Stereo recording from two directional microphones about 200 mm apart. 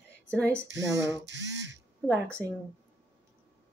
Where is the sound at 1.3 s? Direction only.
65° right (ahead or behind).